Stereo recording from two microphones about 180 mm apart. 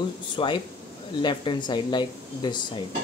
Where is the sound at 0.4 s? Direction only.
30° left (ahead or behind).